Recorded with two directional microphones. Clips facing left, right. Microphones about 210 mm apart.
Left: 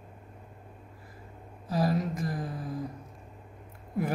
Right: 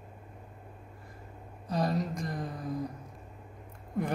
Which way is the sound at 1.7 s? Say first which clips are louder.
Left 2 dB; 5° left (ahead or behind).